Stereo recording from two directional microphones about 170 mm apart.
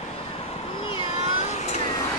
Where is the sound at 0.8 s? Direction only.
30° left (ahead or behind).